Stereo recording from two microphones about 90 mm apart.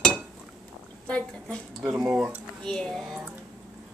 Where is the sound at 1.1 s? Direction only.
10° left (ahead or behind).